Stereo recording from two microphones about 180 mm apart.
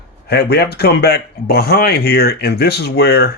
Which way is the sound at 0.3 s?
65° left (ahead or behind).